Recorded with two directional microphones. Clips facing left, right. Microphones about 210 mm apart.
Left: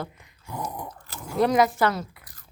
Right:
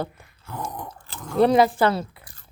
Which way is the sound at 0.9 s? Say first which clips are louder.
Right 1 dB; 30° right (ahead or behind).